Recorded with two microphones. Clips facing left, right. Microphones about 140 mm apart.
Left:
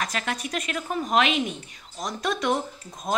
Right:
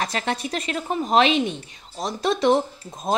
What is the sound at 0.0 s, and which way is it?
A woman's voice, 30° right (ahead or behind).